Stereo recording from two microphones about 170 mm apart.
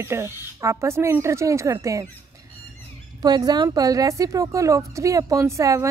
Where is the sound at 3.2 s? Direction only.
25° right (ahead or behind).